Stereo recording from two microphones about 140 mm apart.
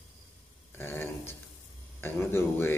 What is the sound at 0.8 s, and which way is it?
Speech, 15° left (ahead or behind).